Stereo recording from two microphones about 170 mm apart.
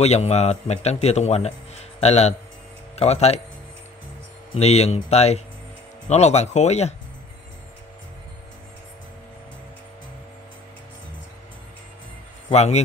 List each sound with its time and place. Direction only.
0.0 s a man's voice: 40° left (ahead or behind)
4.6 s a man's voice: 40° left (ahead or behind)
12.4 s a man's voice: 40° left (ahead or behind)